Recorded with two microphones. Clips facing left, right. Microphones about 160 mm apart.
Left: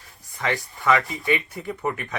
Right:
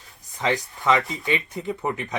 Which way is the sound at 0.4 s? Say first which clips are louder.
Right 1 dB; 20° right (ahead or behind).